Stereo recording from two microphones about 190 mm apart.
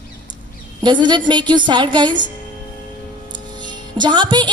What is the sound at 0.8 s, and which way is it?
A woman's voice, 25° right (ahead or behind).